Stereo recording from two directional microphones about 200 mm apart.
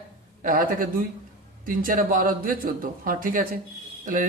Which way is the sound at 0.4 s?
45° right (ahead or behind).